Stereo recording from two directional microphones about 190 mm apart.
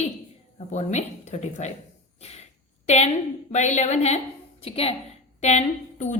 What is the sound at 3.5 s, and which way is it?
A woman's voice, 40° left (ahead or behind).